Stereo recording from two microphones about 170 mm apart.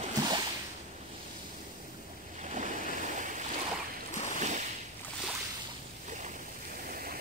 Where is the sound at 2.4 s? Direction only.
45° right (ahead or behind).